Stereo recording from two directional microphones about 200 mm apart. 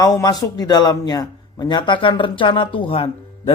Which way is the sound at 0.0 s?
20° left (ahead or behind).